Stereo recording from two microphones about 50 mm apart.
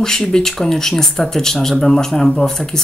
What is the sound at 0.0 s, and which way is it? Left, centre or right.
Speech, centre.